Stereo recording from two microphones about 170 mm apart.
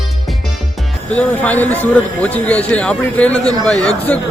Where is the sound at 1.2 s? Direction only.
10° left (ahead or behind).